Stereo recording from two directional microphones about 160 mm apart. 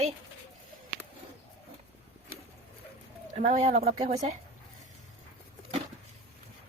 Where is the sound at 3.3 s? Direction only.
50° right (ahead or behind).